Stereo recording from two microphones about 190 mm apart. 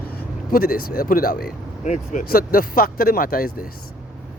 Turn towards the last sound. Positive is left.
turn(degrees=50)  # may be behind; listen again after turning